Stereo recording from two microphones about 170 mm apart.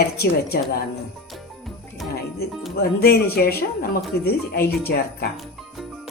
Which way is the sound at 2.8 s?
65° left (ahead or behind).